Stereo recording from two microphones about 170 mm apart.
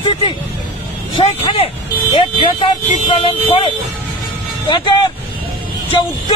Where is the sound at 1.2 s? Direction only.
35° left (ahead or behind).